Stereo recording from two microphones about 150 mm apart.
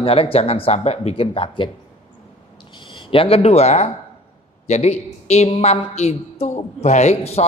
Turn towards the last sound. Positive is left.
turn(degrees=45)  # may be behind; listen again after turning